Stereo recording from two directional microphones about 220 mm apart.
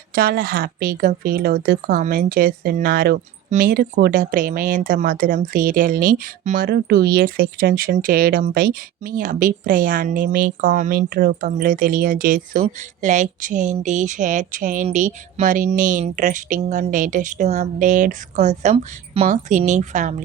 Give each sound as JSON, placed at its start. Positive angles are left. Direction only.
{"t": 0.1, "sound": "speech", "side_deg": -40}